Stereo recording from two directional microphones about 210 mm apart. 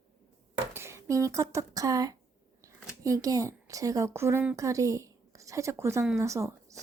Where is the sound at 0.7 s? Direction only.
10° right (ahead or behind).